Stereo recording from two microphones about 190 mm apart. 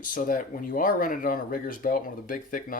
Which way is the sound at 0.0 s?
45° left (ahead or behind).